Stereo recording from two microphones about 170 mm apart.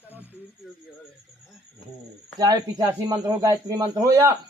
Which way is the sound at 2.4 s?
20° right (ahead or behind).